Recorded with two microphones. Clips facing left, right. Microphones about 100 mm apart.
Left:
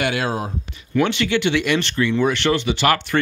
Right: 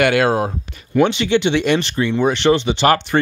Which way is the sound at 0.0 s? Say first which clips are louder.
Right 7 dB; 60° right (ahead or behind).